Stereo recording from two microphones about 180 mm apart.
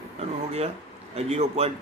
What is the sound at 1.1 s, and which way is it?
Speech, 35° right (ahead or behind).